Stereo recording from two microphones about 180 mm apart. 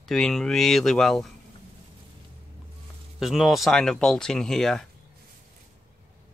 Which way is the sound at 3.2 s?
Centre (ahead or behind).